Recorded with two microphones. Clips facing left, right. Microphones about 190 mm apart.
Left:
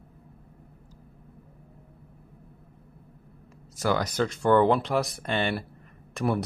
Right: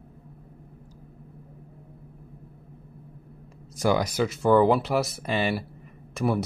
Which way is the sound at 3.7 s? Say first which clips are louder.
Right 2 dB; 15° right (ahead or behind).